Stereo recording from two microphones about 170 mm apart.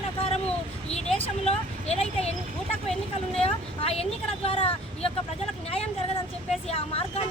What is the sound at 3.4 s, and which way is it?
Speech, 35° left (ahead or behind).